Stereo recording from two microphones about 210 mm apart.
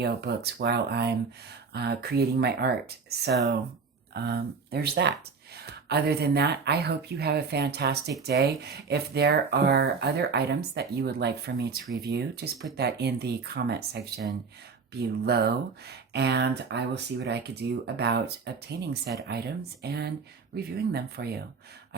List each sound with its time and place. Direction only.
0.0 s speech: 50° right (ahead or behind)